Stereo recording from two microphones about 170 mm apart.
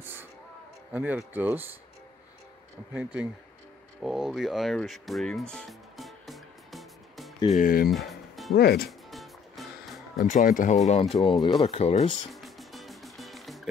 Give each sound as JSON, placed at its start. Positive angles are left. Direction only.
{"t": 0.0, "sound": "a sound", "side_deg": -10}
{"t": 0.9, "sound": "speech", "side_deg": -10}
{"t": 2.9, "sound": "speech", "side_deg": -10}
{"t": 5.5, "sound": "music", "side_deg": 0}
{"t": 7.5, "sound": "speech", "side_deg": 55}
{"t": 7.9, "sound": "music", "side_deg": 0}
{"t": 8.5, "sound": "speech", "side_deg": 65}
{"t": 9.1, "sound": "music", "side_deg": 0}
{"t": 10.2, "sound": "speech", "side_deg": 50}
{"t": 10.9, "sound": "speech", "side_deg": 35}
{"t": 12.4, "sound": "music", "side_deg": 0}